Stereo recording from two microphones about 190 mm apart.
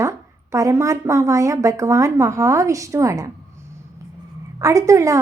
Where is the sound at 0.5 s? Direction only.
15° right (ahead or behind).